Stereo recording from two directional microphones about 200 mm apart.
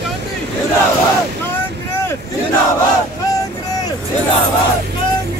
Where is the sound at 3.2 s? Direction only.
15° left (ahead or behind).